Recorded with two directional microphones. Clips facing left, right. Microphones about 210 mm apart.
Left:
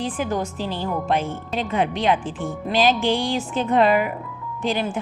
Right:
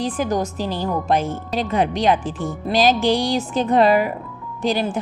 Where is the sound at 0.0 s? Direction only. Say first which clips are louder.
Right 3 dB; 40° right (ahead or behind).